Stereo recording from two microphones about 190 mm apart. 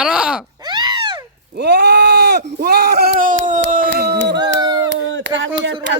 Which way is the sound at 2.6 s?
60° right (ahead or behind).